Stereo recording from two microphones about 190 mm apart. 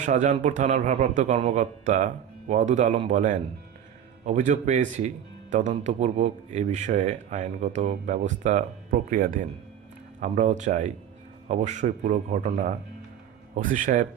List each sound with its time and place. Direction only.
0.0 s speech: 40° right (ahead or behind)
13.6 s speech: 45° right (ahead or behind)